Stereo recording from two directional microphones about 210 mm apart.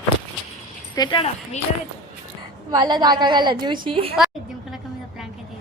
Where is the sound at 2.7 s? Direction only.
20° right (ahead or behind).